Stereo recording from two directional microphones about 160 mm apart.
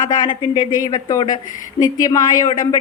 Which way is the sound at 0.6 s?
55° left (ahead or behind).